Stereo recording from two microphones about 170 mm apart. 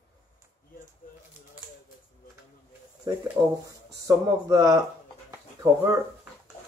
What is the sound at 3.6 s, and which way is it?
Speech, 20° right (ahead or behind).